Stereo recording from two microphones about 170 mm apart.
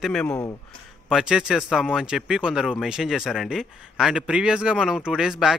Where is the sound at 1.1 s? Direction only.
5° right (ahead or behind).